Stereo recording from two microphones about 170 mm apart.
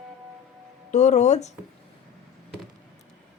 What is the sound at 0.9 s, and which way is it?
Speech, 45° left (ahead or behind).